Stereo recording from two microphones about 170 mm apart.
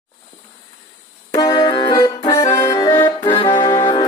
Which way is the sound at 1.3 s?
25° left (ahead or behind).